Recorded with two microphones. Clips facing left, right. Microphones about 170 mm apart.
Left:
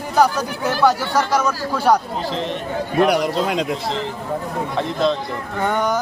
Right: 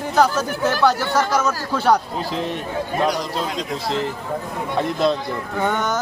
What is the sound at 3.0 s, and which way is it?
Speech, 65° left (ahead or behind).